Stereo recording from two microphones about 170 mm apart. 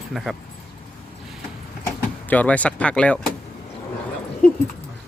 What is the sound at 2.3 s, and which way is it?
Speech, 10° left (ahead or behind).